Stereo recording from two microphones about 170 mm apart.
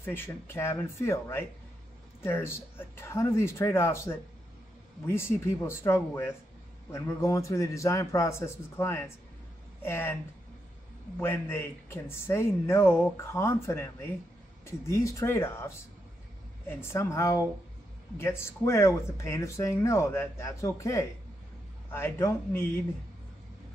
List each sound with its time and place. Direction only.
0.0 s speech: 15° left (ahead or behind)
11.1 s speech: 15° left (ahead or behind)